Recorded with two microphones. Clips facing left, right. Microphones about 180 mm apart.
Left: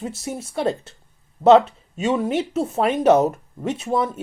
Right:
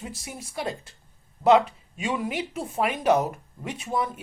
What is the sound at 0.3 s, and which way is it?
Speech, 25° left (ahead or behind).